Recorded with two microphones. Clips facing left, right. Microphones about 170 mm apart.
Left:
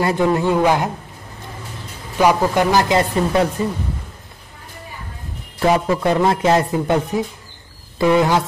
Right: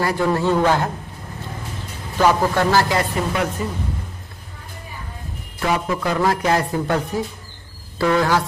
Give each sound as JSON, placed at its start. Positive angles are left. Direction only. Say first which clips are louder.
{"t": 0.0, "sound": "speech", "louder": "left 2 dB", "side_deg": 20}
{"t": 2.1, "sound": "speech", "louder": "left 2 dB", "side_deg": 15}
{"t": 5.6, "sound": "a man's voice", "louder": "left 5 dB", "side_deg": 30}